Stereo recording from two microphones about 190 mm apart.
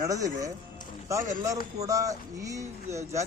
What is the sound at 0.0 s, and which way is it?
Speech, 20° right (ahead or behind).